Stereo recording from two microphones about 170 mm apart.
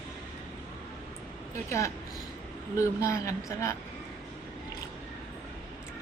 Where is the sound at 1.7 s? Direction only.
20° left (ahead or behind).